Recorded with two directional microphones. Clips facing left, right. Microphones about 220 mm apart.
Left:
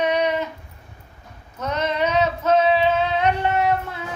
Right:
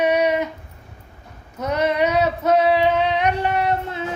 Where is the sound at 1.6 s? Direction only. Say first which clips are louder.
Right 3 dB; 15° right (ahead or behind).